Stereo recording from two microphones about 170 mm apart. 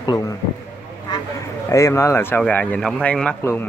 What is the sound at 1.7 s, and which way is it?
Speech, 20° left (ahead or behind).